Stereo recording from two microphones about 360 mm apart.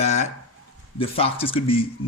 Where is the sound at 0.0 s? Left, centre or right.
Centre.